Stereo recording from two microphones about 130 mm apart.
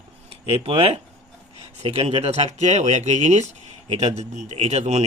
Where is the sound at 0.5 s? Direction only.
45° right (ahead or behind); by 3.4 s 65° right (ahead or behind).